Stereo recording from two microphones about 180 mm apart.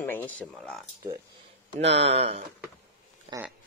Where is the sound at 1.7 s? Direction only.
35° right (ahead or behind).